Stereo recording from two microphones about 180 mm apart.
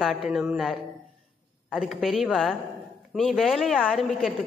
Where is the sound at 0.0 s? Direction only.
Centre (ahead or behind).